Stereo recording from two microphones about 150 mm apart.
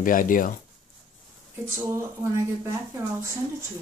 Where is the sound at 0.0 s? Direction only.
65° left (ahead or behind).